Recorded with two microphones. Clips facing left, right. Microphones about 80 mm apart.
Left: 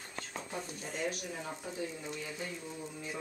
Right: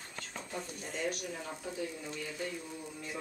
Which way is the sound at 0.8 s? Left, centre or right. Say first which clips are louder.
Right 1 dB; centre.